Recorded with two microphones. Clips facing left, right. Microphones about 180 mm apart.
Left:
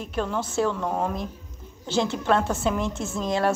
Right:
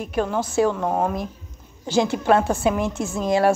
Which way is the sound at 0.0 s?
10° right (ahead or behind).